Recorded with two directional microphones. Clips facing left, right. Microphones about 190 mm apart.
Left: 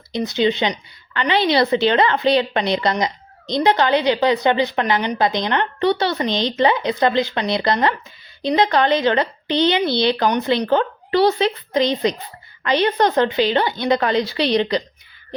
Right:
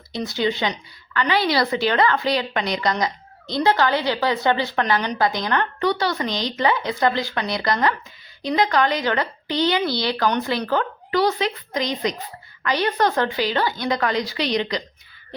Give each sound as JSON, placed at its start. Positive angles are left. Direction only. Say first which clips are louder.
{"t": 0.1, "sound": "a woman's voice", "louder": "left 4 dB", "side_deg": 20}